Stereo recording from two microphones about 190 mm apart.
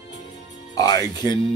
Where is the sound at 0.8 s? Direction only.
20° left (ahead or behind).